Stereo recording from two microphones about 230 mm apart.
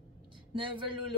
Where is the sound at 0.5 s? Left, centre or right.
Right.